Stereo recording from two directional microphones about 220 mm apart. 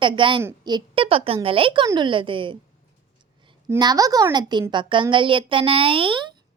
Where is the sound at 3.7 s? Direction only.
15° right (ahead or behind).